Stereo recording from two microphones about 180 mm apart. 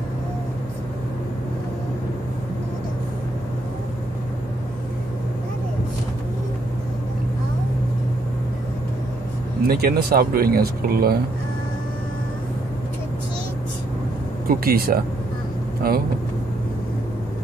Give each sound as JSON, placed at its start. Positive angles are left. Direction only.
{"t": 9.7, "sound": "speech", "side_deg": -60}
{"t": 14.5, "sound": "speech", "side_deg": -55}